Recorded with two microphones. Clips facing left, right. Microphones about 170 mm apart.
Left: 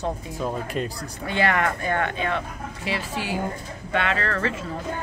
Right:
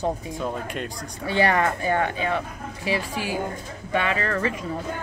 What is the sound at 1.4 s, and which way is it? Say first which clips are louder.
Speech: right 2 dB; 20° right (ahead or behind).